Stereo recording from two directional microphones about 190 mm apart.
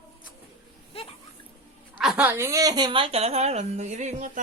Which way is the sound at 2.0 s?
5° right (ahead or behind).